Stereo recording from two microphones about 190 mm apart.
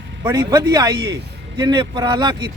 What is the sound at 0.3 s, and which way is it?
A man's voice, 20° right (ahead or behind).